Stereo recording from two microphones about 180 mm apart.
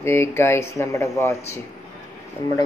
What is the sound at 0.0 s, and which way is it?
Speech, 15° left (ahead or behind).